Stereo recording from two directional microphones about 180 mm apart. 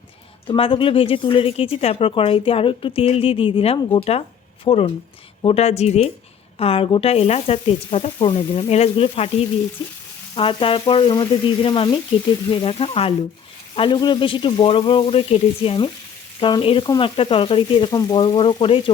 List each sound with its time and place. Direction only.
0.4 s speech: 30° left (ahead or behind)
9.8 s speech: 25° left (ahead or behind)